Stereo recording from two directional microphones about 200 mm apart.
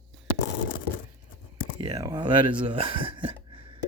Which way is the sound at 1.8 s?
20° right (ahead or behind).